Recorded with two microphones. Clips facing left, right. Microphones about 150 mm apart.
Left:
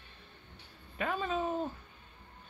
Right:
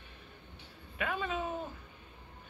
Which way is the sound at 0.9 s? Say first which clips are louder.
Left 2 dB; 35° left (ahead or behind).